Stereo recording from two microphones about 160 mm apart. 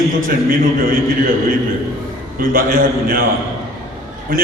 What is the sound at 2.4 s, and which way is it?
Speech, 65° right (ahead or behind).